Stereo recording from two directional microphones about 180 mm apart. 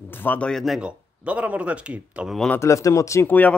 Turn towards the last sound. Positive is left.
turn(degrees=10)  # may be behind; listen again after turning